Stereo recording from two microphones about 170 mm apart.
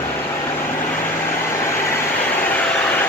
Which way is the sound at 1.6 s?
15° left (ahead or behind).